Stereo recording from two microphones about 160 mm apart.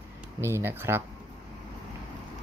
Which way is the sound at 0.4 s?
15° right (ahead or behind).